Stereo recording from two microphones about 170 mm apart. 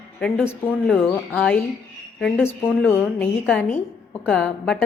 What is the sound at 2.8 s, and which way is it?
A woman's voice, 10° left (ahead or behind).